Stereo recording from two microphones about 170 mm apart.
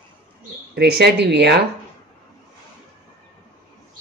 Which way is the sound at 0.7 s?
75° right (ahead or behind).